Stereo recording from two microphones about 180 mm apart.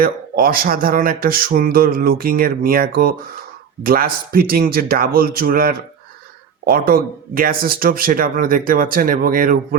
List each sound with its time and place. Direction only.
0.0 s speech: 55° right (ahead or behind)